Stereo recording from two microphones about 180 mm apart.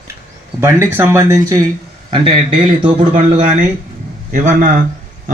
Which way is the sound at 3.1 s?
40° right (ahead or behind).